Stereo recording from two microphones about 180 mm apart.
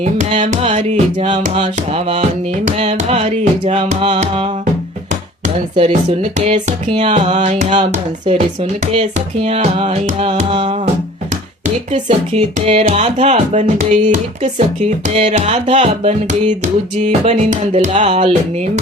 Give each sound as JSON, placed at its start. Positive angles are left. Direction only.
{"t": 0.0, "sound": "music", "side_deg": -40}
{"t": 5.7, "sound": "music", "side_deg": -35}
{"t": 8.9, "sound": "music", "side_deg": -35}
{"t": 12.0, "sound": "music", "side_deg": -30}